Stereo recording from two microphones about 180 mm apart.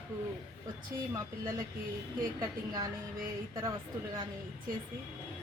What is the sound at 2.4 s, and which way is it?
A woman's voice, 20° right (ahead or behind).